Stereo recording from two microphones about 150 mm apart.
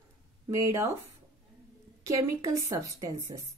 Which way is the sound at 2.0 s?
20° right (ahead or behind).